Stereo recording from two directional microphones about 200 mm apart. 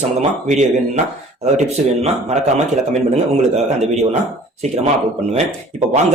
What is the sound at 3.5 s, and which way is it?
Speech, 35° right (ahead or behind).